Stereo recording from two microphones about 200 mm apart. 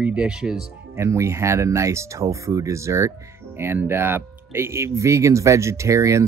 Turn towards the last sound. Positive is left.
turn(degrees=-15)  # may be behind; listen again after turning